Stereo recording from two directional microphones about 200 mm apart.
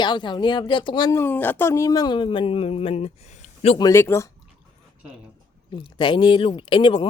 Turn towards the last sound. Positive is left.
turn(degrees=25)  # may be behind; listen again after turning